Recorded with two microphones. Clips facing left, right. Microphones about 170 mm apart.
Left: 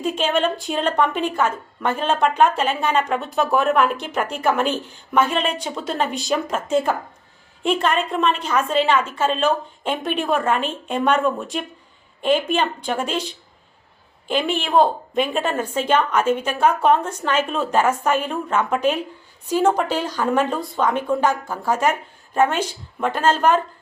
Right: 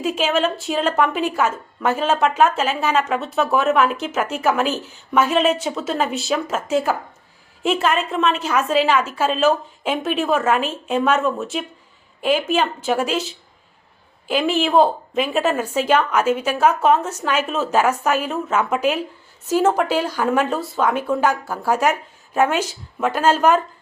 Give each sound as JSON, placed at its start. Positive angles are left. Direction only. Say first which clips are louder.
{"t": 0.0, "sound": "a woman's voice", "louder": "right 1 dB", "side_deg": -5}